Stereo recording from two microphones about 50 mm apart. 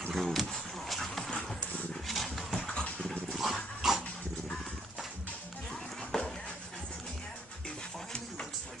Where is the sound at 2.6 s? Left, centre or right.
Centre.